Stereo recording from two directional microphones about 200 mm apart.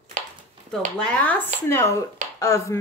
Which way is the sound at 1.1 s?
10° left (ahead or behind).